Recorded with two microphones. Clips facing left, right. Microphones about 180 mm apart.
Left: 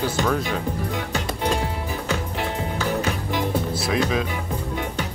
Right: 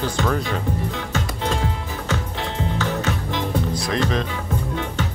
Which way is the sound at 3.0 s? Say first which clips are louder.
Even; 10° left (ahead or behind).